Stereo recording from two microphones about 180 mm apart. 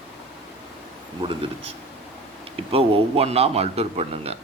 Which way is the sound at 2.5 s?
30° right (ahead or behind).